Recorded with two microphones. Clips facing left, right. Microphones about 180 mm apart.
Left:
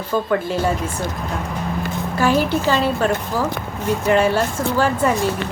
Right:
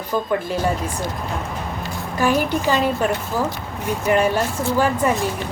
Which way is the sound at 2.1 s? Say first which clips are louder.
Left 1 dB; 15° right (ahead or behind).